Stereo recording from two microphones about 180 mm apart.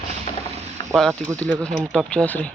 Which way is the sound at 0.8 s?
25° left (ahead or behind).